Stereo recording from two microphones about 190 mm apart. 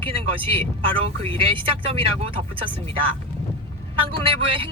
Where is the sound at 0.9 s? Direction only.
30° right (ahead or behind).